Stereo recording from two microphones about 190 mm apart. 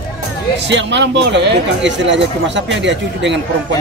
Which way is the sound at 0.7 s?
70° right (ahead or behind).